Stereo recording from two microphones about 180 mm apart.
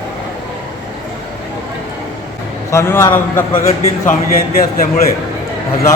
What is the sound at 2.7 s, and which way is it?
Speech, 15° left (ahead or behind).